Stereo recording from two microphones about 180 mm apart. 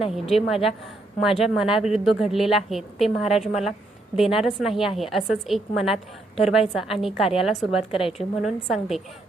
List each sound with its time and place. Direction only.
0.1 s a woman's voice: centre (ahead or behind)
7.8 s a woman's voice: 30° left (ahead or behind)
8.2 s a woman's voice: centre (ahead or behind)